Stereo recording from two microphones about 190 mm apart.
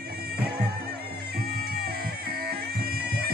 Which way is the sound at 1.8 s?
55° right (ahead or behind).